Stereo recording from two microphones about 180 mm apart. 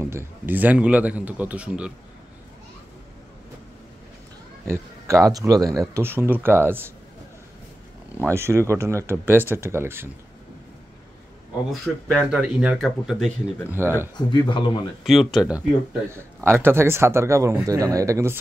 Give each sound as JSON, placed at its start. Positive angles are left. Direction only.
{"t": 0.0, "sound": "a man's voice", "side_deg": -10}
{"t": 4.6, "sound": "speech", "side_deg": -15}
{"t": 8.2, "sound": "speech", "side_deg": -15}
{"t": 11.7, "sound": "speech", "side_deg": 0}
{"t": 13.8, "sound": "speech", "side_deg": -15}
{"t": 14.1, "sound": "speech", "side_deg": 25}
{"t": 15.0, "sound": "speech", "side_deg": 0}
{"t": 16.1, "sound": "speech", "side_deg": -15}